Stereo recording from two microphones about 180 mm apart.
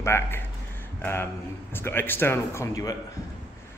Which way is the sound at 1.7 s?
10° left (ahead or behind).